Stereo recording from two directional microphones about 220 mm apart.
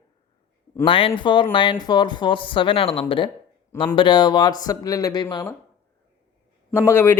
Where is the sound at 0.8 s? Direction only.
25° left (ahead or behind).